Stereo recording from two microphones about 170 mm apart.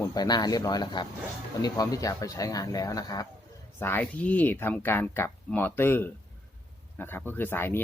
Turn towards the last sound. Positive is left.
turn(degrees=10)  # may be behind; listen again after turning